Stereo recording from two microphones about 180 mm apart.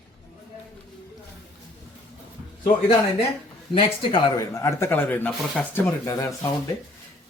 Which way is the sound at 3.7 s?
25° left (ahead or behind).